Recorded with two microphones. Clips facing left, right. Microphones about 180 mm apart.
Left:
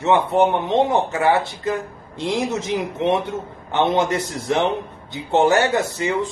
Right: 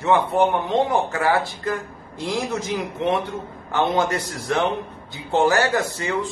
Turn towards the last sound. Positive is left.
turn(degrees=20)  # may be behind; listen again after turning